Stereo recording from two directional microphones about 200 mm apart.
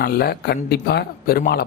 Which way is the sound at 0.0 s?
50° left (ahead or behind).